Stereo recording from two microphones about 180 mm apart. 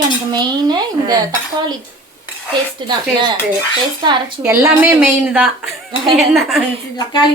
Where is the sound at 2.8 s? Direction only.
25° right (ahead or behind).